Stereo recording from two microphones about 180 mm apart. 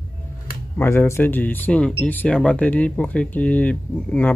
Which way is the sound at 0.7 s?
15° left (ahead or behind).